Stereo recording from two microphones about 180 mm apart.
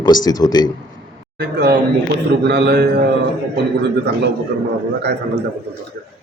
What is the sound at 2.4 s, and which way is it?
Speech, 70° right (ahead or behind).